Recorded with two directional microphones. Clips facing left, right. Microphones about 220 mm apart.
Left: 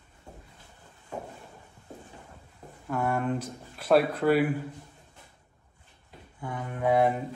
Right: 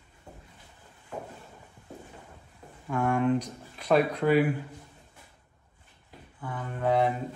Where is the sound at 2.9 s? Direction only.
5° left (ahead or behind).